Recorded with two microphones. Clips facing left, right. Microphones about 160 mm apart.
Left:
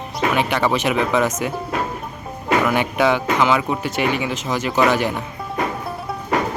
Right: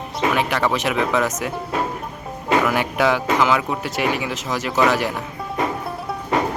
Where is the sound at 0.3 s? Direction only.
Centre (ahead or behind).